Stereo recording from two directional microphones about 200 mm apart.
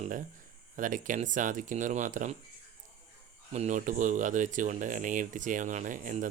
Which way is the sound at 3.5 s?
35° right (ahead or behind).